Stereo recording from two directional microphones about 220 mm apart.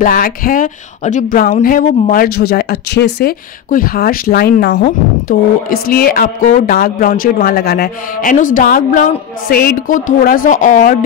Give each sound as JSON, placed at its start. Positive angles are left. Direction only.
{"t": 0.0, "sound": "speech", "side_deg": 40}